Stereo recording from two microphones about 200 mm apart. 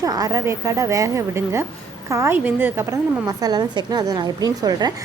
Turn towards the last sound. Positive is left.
turn(degrees=-20)  # may be behind; listen again after turning